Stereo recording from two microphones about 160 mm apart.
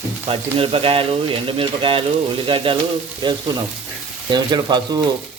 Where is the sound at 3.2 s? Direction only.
30° right (ahead or behind).